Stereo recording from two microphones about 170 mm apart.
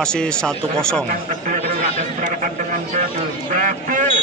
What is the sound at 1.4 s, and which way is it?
A man's voice, 50° right (ahead or behind).